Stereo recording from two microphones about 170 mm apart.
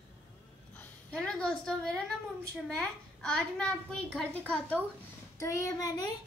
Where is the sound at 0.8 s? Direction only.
5° left (ahead or behind); by 6.2 s 20° left (ahead or behind).